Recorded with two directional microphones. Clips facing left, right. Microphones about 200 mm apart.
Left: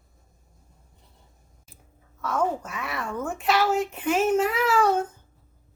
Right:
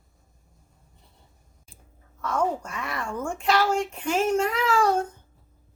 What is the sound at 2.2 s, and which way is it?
A child's voice, 5° left (ahead or behind).